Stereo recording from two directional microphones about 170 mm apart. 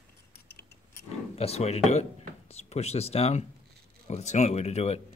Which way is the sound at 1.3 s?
35° left (ahead or behind).